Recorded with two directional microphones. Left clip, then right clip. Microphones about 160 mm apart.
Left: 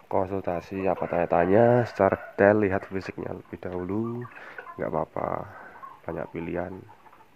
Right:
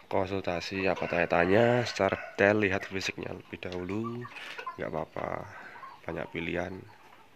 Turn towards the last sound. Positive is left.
turn(degrees=-15)  # may be behind; listen again after turning